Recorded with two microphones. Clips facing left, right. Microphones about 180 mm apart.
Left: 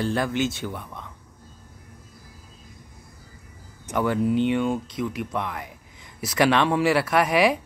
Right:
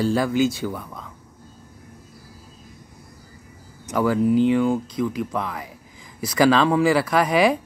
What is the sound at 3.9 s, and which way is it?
Speech, centre (ahead or behind).